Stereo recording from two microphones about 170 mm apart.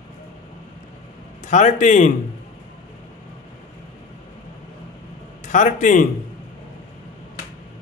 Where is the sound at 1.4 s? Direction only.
45° left (ahead or behind).